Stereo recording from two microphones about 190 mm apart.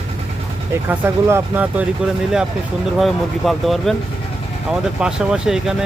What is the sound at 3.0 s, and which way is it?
Speech, centre (ahead or behind).